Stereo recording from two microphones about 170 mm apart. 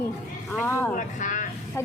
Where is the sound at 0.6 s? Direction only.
15° left (ahead or behind).